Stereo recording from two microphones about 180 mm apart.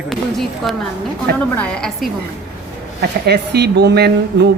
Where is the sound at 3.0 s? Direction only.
65° right (ahead or behind).